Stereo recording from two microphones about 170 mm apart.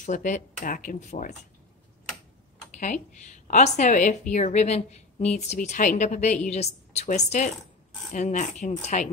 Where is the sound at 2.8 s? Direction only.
45° left (ahead or behind).